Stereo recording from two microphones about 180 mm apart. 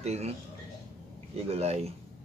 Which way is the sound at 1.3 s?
35° right (ahead or behind).